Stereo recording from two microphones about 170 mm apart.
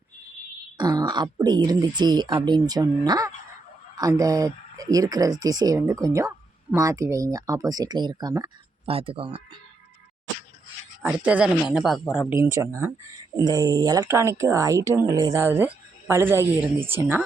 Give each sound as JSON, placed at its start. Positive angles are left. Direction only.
{"t": 0.8, "sound": "speech", "side_deg": -25}
{"t": 8.9, "sound": "speech", "side_deg": -35}
{"t": 11.0, "sound": "speech", "side_deg": -5}
{"t": 12.7, "sound": "speech", "side_deg": -15}